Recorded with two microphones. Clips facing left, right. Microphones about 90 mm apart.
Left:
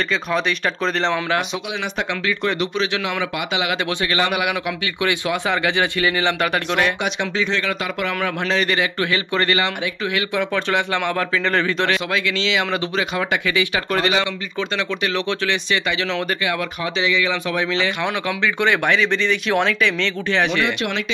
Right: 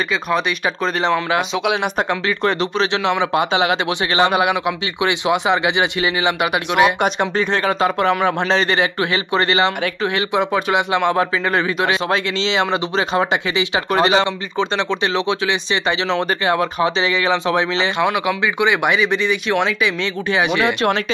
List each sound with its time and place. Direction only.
1.0 s speech: 10° right (ahead or behind)
2.2 s speech: 35° right (ahead or behind); by 6.9 s 15° right (ahead or behind)
7.0 s speech: 45° right (ahead or behind)
7.8 s speech: 30° right (ahead or behind); by 12.0 s 15° right (ahead or behind)
12.1 s speech: 30° right (ahead or behind)
18.0 s speech: 10° right (ahead or behind)
20.6 s speech: 40° right (ahead or behind)